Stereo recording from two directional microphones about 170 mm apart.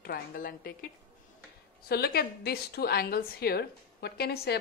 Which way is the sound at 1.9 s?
70° left (ahead or behind).